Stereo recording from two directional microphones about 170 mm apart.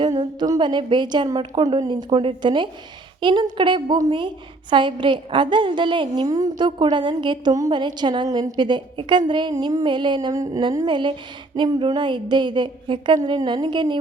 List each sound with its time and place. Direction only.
0.0 s a woman's voice: 25° right (ahead or behind)